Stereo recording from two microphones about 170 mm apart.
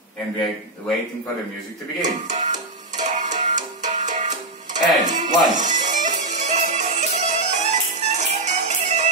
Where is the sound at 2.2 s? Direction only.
45° right (ahead or behind).